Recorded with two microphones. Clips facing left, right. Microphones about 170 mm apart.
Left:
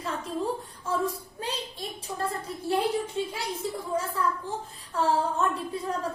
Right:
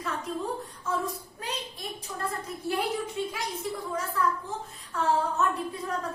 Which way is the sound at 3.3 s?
30° left (ahead or behind).